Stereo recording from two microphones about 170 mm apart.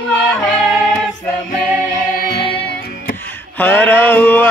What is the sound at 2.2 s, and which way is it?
Music, 70° left (ahead or behind).